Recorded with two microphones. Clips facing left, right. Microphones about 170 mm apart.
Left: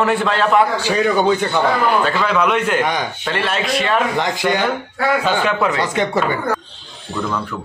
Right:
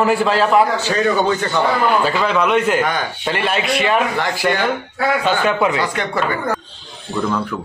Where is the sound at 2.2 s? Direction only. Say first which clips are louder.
Right 1 dB; centre (ahead or behind).